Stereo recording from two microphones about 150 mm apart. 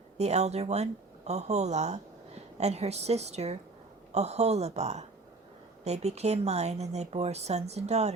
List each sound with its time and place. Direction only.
0.2 s speech: 45° right (ahead or behind)